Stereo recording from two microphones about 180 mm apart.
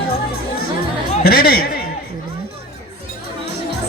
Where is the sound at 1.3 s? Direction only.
60° left (ahead or behind).